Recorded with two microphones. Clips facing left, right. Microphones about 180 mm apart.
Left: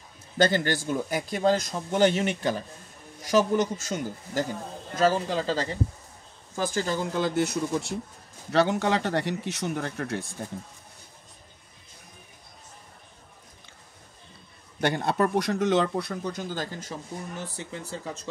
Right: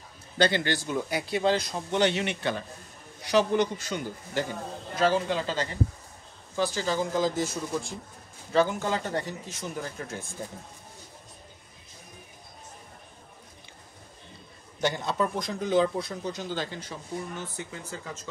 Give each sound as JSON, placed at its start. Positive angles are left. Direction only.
{"t": 0.4, "sound": "speech", "side_deg": 45}
{"t": 6.6, "sound": "speech", "side_deg": 50}
{"t": 14.8, "sound": "speech", "side_deg": 60}
{"t": 17.6, "sound": "speech", "side_deg": 30}